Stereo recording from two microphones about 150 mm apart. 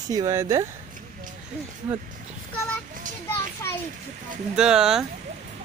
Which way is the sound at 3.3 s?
15° left (ahead or behind).